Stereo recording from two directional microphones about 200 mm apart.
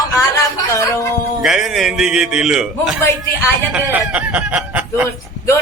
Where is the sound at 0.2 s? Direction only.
15° left (ahead or behind).